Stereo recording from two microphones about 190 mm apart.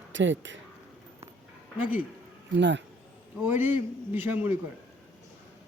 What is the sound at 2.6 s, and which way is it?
Speech, 70° right (ahead or behind).